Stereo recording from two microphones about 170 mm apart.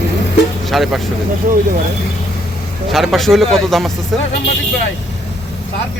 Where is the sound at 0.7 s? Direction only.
Centre (ahead or behind).